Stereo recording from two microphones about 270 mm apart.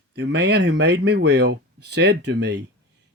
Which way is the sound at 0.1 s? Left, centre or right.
Right.